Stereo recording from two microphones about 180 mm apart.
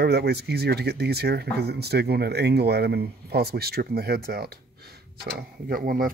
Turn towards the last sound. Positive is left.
turn(degrees=-55)  # may be behind; listen again after turning